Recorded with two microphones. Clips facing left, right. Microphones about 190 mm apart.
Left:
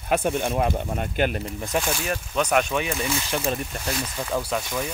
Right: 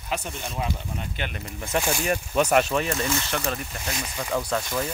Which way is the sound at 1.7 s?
10° right (ahead or behind).